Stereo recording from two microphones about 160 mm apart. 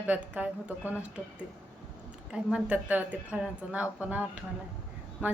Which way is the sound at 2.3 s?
5° right (ahead or behind).